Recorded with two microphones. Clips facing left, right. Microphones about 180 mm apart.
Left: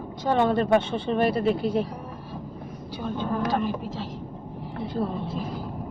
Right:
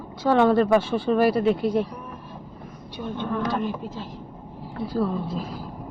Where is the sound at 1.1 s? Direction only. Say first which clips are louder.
Right 3 dB; centre (ahead or behind).